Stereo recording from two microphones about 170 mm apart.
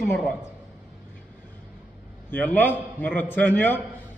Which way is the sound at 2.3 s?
10° left (ahead or behind).